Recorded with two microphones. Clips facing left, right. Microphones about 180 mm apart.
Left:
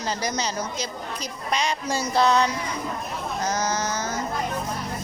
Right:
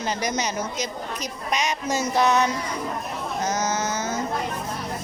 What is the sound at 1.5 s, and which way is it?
Speech, 15° right (ahead or behind).